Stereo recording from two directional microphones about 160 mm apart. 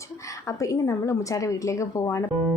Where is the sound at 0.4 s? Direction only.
20° left (ahead or behind).